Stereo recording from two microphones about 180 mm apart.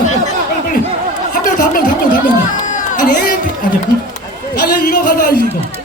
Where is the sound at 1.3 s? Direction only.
50° left (ahead or behind).